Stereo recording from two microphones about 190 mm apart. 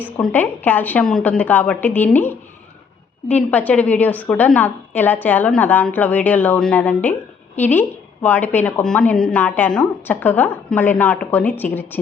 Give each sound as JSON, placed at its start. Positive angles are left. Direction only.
{"t": 0.0, "sound": "a woman's voice", "side_deg": 10}